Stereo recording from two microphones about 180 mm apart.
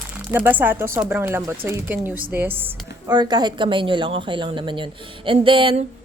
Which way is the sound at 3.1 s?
25° right (ahead or behind).